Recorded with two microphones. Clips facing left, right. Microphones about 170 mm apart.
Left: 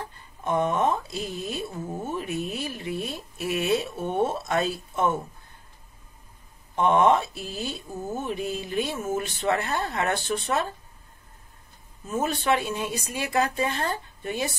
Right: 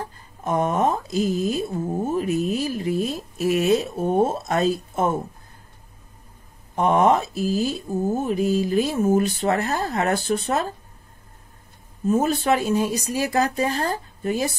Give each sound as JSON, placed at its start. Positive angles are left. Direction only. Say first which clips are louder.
{"t": 0.4, "sound": "a sound", "louder": "right 3 dB", "side_deg": -40}
{"t": 6.7, "sound": "speech", "louder": "right 2 dB", "side_deg": -35}
{"t": 12.1, "sound": "speech", "louder": "right 5 dB", "side_deg": -40}